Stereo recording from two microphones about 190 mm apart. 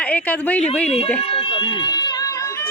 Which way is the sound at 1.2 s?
25° left (ahead or behind).